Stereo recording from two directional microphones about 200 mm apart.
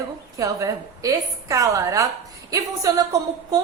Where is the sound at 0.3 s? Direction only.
15° right (ahead or behind).